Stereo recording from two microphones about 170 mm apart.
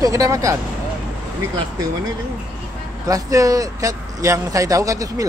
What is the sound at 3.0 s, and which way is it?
Speech, 20° right (ahead or behind).